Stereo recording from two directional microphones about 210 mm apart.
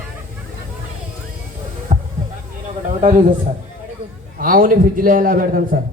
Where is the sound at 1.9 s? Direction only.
30° right (ahead or behind).